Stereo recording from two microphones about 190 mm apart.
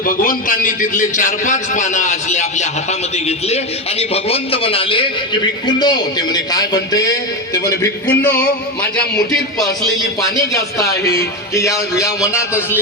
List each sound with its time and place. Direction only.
0.0 s a man's voice: 50° left (ahead or behind); by 7.1 s 20° left (ahead or behind)
7.5 s music: 15° left (ahead or behind)
10.2 s music: 20° left (ahead or behind)